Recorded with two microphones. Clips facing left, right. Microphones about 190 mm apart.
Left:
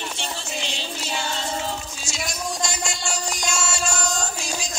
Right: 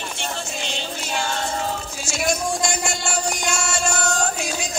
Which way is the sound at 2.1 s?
55° right (ahead or behind).